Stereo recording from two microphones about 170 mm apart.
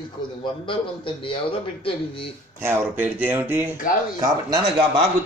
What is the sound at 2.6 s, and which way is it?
A man's voice, 15° right (ahead or behind).